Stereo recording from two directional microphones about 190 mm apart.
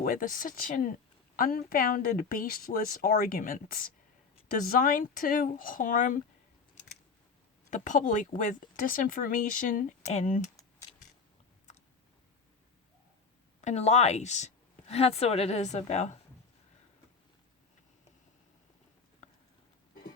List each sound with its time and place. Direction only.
0.0 s speech: 45° left (ahead or behind)
7.7 s speech: 40° left (ahead or behind)
13.6 s speech: 35° left (ahead or behind)